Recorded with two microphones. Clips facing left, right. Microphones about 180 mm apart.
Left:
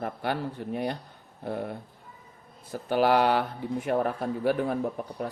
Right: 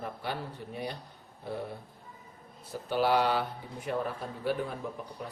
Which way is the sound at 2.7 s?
50° left (ahead or behind).